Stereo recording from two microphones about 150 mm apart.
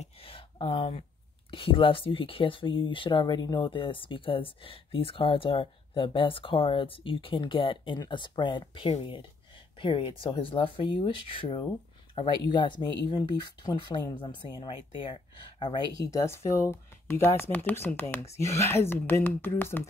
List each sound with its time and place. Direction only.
0.0 s a sound: 40° left (ahead or behind)
1.5 s speech: 35° left (ahead or behind)
16.0 s speech: 20° left (ahead or behind)